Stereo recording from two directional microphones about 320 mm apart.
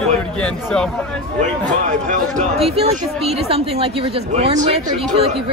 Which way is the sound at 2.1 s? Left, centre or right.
Right.